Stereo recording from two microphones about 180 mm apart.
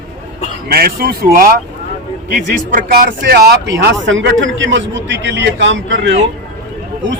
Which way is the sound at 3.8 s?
80° right.